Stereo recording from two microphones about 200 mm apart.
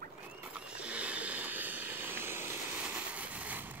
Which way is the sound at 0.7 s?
5° right (ahead or behind).